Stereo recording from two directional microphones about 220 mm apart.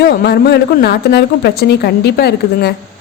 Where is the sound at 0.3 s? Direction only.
45° left (ahead or behind).